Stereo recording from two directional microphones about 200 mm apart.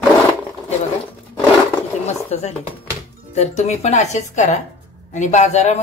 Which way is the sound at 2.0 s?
35° left (ahead or behind).